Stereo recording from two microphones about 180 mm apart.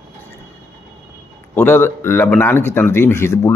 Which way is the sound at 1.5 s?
10° left (ahead or behind).